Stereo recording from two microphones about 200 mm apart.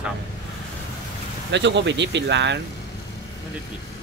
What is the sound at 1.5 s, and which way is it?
Speech, 60° right (ahead or behind).